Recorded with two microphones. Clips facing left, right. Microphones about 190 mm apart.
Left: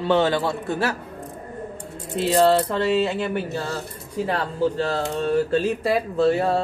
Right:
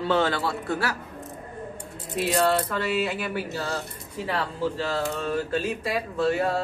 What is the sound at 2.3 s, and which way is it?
Speech, 25° left (ahead or behind).